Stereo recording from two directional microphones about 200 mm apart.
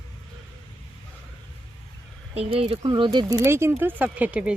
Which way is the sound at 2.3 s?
30° right (ahead or behind).